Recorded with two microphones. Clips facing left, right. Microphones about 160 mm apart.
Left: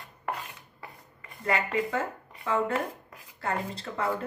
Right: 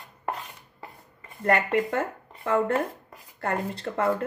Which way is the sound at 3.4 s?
55° right (ahead or behind).